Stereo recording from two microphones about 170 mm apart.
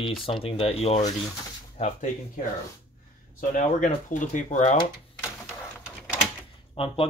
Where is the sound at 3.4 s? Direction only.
50° left (ahead or behind).